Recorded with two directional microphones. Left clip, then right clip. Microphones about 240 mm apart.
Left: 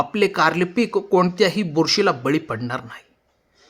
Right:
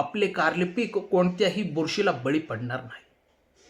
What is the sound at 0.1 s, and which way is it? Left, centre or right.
Speech, left.